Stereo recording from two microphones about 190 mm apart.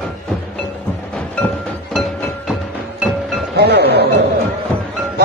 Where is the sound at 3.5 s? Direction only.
60° right (ahead or behind).